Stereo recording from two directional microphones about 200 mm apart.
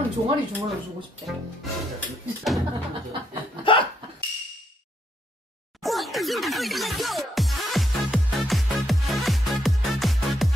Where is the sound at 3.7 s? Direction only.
25° left (ahead or behind).